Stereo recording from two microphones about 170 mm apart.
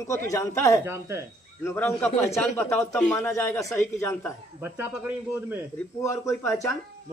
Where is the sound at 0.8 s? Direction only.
15° right (ahead or behind).